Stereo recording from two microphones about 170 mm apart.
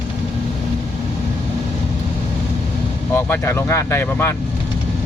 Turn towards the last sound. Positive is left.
turn(degrees=10)  # may be behind; listen again after turning